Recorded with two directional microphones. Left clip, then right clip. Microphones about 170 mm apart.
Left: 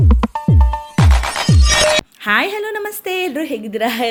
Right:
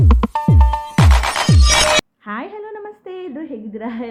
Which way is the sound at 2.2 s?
25° left (ahead or behind).